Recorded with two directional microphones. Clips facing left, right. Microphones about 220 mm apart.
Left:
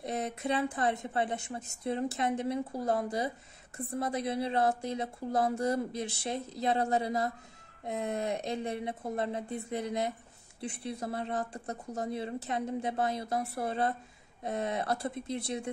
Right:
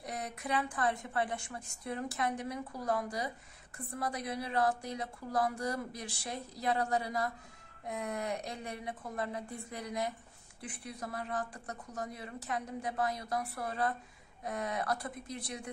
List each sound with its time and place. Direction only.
0.0 s a woman's voice: 25° left (ahead or behind)